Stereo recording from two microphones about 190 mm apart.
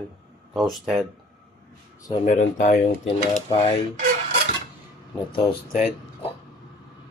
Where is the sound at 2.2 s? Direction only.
40° left (ahead or behind).